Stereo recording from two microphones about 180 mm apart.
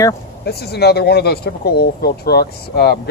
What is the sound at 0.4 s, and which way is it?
Speech, 65° left (ahead or behind).